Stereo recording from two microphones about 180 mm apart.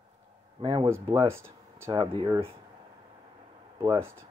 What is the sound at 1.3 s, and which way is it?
Speech, 15° right (ahead or behind).